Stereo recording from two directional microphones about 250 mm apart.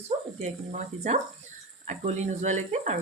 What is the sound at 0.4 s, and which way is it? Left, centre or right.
Speech, right.